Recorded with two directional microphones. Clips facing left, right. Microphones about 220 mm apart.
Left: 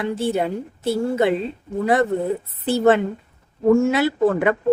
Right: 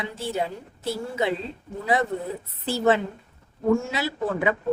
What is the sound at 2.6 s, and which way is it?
Speech, 55° left (ahead or behind).